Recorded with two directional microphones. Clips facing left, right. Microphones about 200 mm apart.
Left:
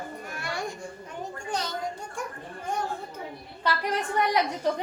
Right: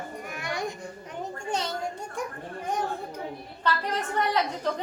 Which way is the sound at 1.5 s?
25° right (ahead or behind).